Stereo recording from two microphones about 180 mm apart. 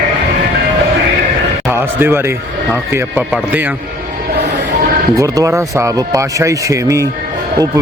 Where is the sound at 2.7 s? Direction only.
10° right (ahead or behind).